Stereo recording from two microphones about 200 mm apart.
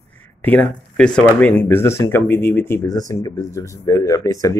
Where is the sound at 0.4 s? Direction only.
10° left (ahead or behind).